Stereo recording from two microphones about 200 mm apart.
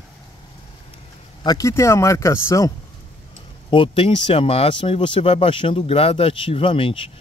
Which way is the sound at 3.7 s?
25° left (ahead or behind).